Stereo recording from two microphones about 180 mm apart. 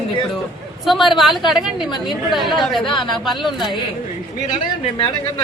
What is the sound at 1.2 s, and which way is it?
A woman's voice, centre (ahead or behind).